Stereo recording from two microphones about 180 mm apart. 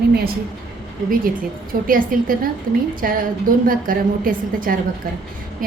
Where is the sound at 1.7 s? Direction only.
50° right (ahead or behind).